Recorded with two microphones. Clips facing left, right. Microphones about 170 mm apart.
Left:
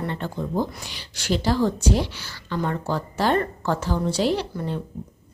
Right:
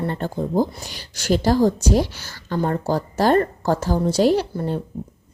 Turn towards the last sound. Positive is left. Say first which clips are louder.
# right 5 dB
turn(degrees=-45)  # may be behind; listen again after turning